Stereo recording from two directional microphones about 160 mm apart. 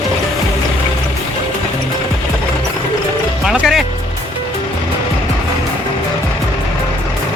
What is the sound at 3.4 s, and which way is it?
Music, 5° right (ahead or behind).